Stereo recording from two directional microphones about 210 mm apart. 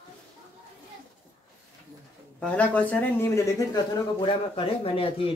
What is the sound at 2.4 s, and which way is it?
Speech, 5° left (ahead or behind).